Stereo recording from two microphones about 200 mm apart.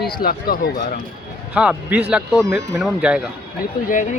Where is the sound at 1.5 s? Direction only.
5° right (ahead or behind).